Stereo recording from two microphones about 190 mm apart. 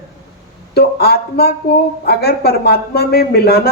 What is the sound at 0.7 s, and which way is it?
Speech, 55° left (ahead or behind).